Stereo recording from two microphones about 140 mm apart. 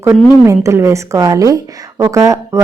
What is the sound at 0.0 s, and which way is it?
A woman's voice, 20° right (ahead or behind).